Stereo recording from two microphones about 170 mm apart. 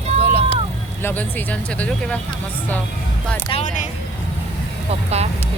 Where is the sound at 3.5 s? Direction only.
40° left (ahead or behind).